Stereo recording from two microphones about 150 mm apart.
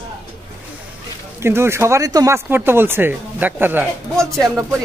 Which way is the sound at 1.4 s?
15° right (ahead or behind).